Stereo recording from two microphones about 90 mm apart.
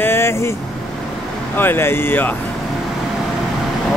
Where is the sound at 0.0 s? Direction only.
30° left (ahead or behind).